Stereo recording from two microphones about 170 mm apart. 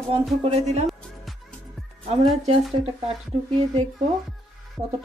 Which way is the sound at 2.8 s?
35° right (ahead or behind).